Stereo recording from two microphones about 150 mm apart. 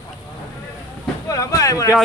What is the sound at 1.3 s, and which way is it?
Speech, 20° left (ahead or behind).